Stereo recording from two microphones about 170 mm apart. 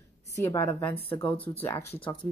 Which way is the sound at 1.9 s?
10° left (ahead or behind).